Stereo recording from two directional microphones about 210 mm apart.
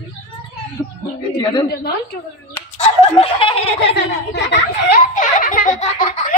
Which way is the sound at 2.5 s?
25° left (ahead or behind).